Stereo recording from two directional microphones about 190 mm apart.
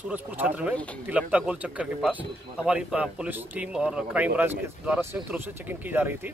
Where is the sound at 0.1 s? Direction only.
10° right (ahead or behind).